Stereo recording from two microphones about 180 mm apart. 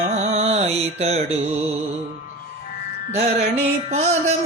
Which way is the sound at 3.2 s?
35° right (ahead or behind).